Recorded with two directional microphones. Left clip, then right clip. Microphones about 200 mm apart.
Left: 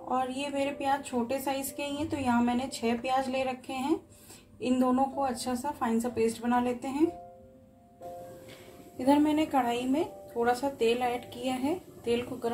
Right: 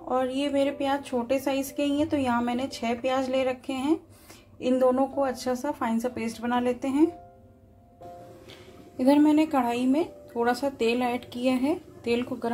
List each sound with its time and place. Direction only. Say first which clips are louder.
0.1 s a woman's voice: right 5 dB; 25° right (ahead or behind)
8.9 s speech: right 5 dB; 30° right (ahead or behind)